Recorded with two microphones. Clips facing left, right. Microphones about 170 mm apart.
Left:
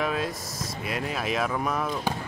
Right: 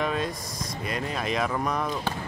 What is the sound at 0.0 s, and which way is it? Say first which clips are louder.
Speech: even; 5° left (ahead or behind).